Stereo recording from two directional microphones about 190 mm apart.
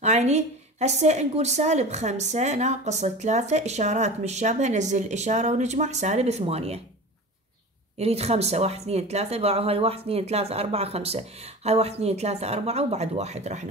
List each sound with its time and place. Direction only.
0.0 s a woman's voice: 35° right (ahead or behind)
8.0 s a woman's voice: 35° right (ahead or behind)